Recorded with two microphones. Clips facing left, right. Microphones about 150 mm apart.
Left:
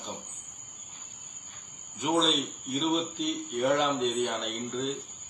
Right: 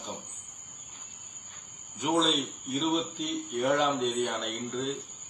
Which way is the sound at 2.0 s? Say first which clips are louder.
Even; centre (ahead or behind).